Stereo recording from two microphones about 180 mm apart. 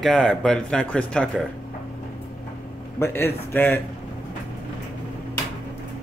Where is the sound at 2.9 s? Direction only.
15° left (ahead or behind).